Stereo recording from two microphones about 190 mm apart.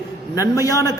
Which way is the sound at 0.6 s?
20° left (ahead or behind).